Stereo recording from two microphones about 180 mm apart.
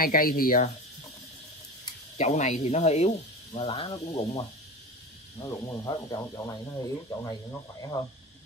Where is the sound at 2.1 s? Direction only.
40° left (ahead or behind).